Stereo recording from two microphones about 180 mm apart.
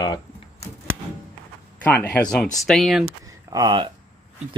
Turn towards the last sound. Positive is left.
turn(degrees=-25)  # may be behind; listen again after turning